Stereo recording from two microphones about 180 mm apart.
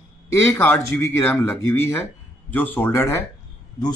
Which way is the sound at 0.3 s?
15° left (ahead or behind).